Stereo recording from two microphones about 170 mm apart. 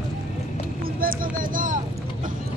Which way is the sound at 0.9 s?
55° right (ahead or behind).